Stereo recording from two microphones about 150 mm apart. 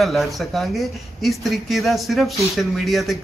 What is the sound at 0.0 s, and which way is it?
Speech, centre (ahead or behind).